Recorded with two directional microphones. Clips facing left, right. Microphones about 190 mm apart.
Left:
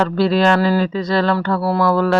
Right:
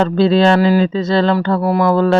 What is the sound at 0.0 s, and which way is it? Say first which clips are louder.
Speech: right 3 dB; 25° right (ahead or behind).